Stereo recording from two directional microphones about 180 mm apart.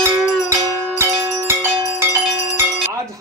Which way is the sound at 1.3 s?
15° right (ahead or behind).